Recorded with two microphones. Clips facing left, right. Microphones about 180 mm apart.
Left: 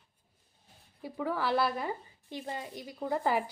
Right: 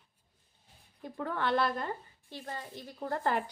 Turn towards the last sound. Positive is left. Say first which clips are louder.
# left 2 dB
turn(degrees=5)  # may be behind; listen again after turning